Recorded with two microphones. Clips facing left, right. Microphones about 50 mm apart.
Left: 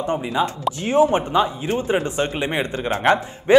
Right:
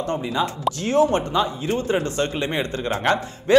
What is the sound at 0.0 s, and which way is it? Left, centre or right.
Speech, centre.